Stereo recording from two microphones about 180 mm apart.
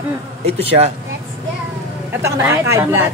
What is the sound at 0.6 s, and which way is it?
Speech, 35° right (ahead or behind).